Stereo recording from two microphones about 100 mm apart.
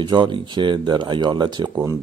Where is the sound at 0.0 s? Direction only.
55° right (ahead or behind).